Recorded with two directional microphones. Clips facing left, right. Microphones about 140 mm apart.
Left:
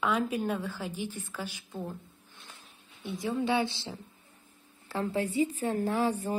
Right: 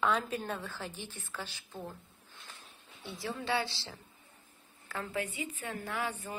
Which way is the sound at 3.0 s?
20° left (ahead or behind).